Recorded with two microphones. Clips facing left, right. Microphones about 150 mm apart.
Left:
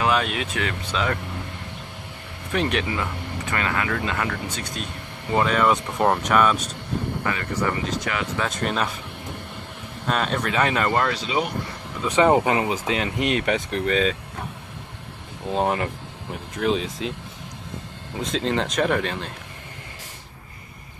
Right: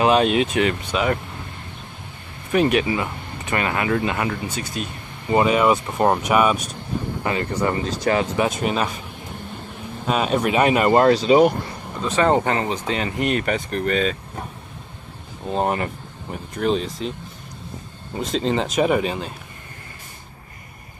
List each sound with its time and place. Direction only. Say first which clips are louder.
0.0 s speech: right 6 dB; 25° right (ahead or behind)
2.5 s speech: right 6 dB; 10° right (ahead or behind)
3.4 s speech: right 4 dB; 20° right (ahead or behind)
7.2 s speech: right 5 dB; 25° right (ahead or behind)
8.4 s speech: right 4 dB; 10° right (ahead or behind)
10.0 s speech: right 4 dB; 5° right (ahead or behind)
10.9 s speech: right 9 dB; 30° right (ahead or behind)
12.0 s speech: left 1 dB; 15° left (ahead or behind)
15.5 s speech: right 1 dB; centre (ahead or behind)
18.2 s speech: right 2 dB; centre (ahead or behind)